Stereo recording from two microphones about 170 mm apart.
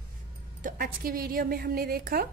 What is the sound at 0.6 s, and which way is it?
A woman's voice, 55° right (ahead or behind).